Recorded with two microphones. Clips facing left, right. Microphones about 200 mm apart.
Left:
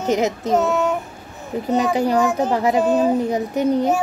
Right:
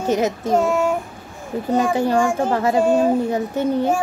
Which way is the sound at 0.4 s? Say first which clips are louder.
Even; 10° right (ahead or behind).